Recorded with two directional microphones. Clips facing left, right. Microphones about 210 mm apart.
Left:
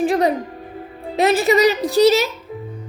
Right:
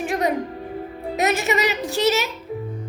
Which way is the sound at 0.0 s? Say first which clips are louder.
Left 5 dB; 35° left (ahead or behind).